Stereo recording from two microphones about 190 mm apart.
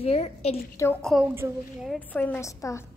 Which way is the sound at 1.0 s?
Centre (ahead or behind).